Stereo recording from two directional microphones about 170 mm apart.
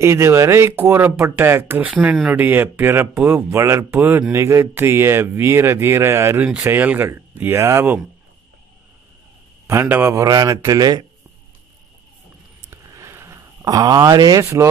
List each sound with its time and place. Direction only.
0.0 s speech: 15° right (ahead or behind)
9.7 s speech: 15° right (ahead or behind)
12.6 s a sound: 20° right (ahead or behind)